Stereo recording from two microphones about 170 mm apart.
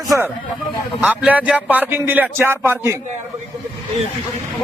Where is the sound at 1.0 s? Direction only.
10° right (ahead or behind).